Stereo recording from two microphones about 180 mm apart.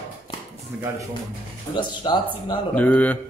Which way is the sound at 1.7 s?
25° left (ahead or behind).